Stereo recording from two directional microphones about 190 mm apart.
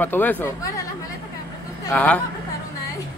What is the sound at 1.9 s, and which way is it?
Speech, 5° left (ahead or behind).